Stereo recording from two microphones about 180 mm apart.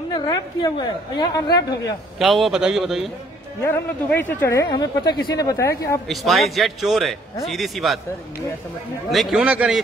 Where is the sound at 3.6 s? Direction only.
10° left (ahead or behind).